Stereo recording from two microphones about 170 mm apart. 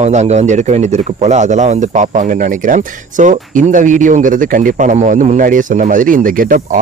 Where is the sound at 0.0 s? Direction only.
40° right (ahead or behind).